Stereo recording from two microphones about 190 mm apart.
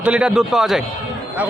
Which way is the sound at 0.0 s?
5° right (ahead or behind).